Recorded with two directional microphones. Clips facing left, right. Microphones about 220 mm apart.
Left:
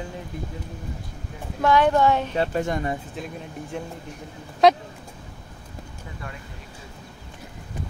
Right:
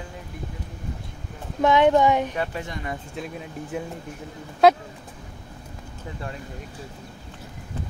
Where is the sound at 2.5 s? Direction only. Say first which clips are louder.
Left 8 dB; 45° left (ahead or behind).